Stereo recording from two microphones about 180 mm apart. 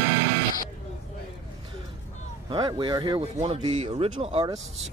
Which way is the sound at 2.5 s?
25° right (ahead or behind).